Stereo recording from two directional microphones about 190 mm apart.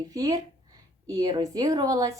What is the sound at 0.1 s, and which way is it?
Speech, 20° right (ahead or behind).